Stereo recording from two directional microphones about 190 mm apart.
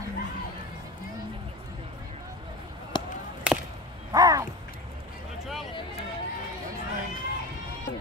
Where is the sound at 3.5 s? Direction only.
5° right (ahead or behind).